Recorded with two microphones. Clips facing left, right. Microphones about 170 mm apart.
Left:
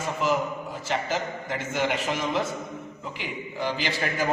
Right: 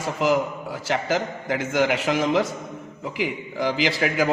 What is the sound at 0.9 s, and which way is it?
A man's voice, 90° right.